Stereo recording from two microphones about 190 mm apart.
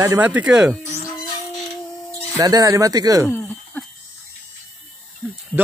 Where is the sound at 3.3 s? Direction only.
10° left (ahead or behind).